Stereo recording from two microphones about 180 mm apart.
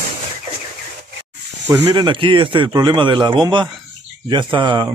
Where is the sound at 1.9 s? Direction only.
25° right (ahead or behind).